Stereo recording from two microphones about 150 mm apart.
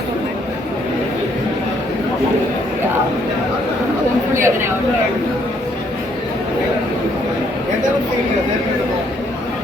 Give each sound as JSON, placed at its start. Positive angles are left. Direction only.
{"t": 4.4, "sound": "speech", "side_deg": -15}